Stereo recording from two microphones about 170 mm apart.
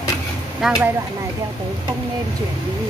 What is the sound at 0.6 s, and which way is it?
Speech, centre (ahead or behind).